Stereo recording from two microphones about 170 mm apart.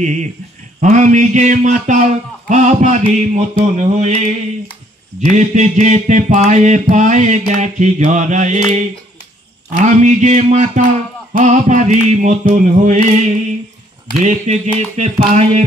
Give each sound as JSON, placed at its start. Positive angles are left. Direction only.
{"t": 0.0, "sound": "speech", "side_deg": -45}
{"t": 9.8, "sound": "speech", "side_deg": -45}
{"t": 14.2, "sound": "a sound", "side_deg": -45}